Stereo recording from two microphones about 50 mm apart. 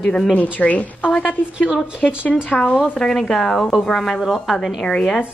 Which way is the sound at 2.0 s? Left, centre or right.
Left.